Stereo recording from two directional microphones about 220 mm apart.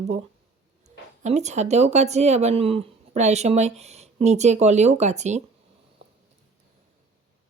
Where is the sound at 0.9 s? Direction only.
30° right (ahead or behind).